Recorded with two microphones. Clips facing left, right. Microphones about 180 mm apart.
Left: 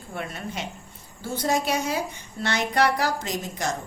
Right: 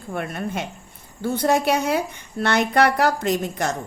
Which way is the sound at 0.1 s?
55° right (ahead or behind).